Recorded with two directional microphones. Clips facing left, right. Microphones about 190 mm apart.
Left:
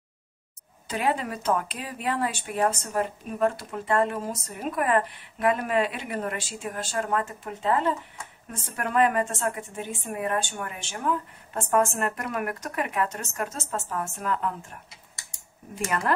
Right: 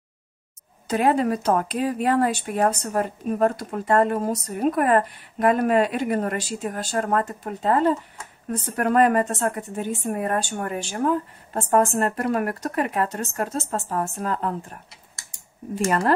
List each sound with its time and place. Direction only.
0.8 s speech: 45° right (ahead or behind)